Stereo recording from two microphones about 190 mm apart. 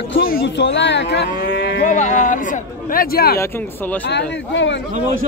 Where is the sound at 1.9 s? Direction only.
40° left (ahead or behind).